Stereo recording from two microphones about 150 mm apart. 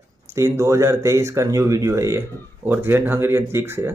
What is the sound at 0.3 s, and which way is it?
Speech, 20° right (ahead or behind).